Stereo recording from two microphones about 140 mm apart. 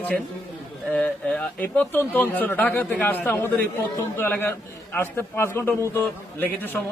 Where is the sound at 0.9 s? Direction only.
10° left (ahead or behind).